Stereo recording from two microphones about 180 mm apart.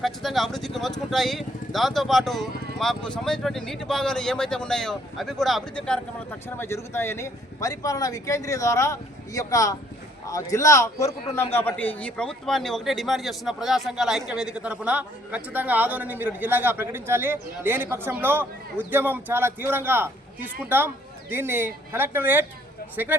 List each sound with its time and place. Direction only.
0.0 s a man's voice: centre (ahead or behind)